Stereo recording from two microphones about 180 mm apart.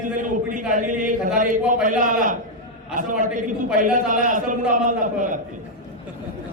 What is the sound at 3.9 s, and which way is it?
A man's voice, 45° right (ahead or behind).